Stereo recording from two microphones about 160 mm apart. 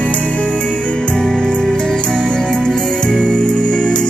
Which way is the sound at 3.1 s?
5° left (ahead or behind).